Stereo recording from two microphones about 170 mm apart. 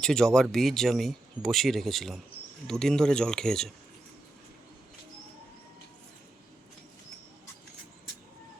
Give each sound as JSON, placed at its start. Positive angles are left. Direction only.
{"t": 0.0, "sound": "speech", "side_deg": 5}